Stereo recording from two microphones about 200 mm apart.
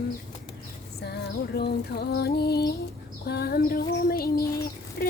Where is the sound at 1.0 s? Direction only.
55° left (ahead or behind).